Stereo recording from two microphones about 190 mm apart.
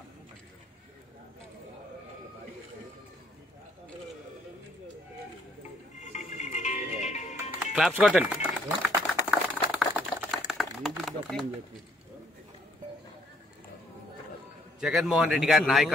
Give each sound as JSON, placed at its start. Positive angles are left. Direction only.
{"t": 5.9, "sound": "music", "side_deg": 40}
{"t": 7.7, "sound": "a sound", "side_deg": -5}
{"t": 14.8, "sound": "a man's voice", "side_deg": 0}